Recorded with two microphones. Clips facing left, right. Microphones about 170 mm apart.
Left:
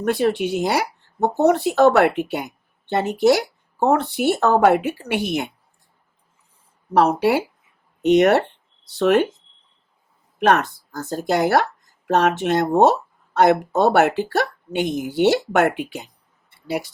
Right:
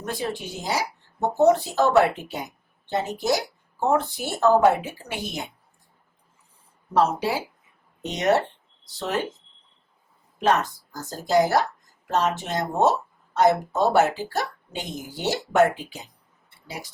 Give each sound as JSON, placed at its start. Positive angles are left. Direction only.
{"t": 0.0, "sound": "a woman's voice", "side_deg": 65}
{"t": 6.9, "sound": "a woman's voice", "side_deg": 65}
{"t": 10.4, "sound": "a woman's voice", "side_deg": 65}